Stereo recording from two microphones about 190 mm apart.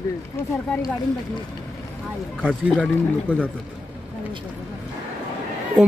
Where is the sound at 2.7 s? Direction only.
5° left (ahead or behind).